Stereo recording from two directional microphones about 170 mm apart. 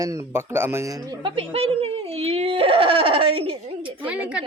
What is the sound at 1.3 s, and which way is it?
Speech, 35° right (ahead or behind).